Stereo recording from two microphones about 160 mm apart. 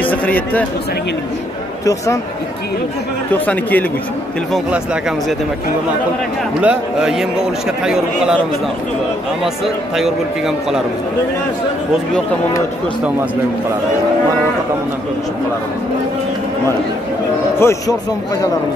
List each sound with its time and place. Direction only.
0.0 s speech: 10° left (ahead or behind)
3.3 s speech: 10° left (ahead or behind)
4.5 s speech: 5° right (ahead or behind)
6.6 s a man's voice: 5° right (ahead or behind)
9.9 s a man's voice: 5° right (ahead or behind)
17.6 s speech: 15° left (ahead or behind)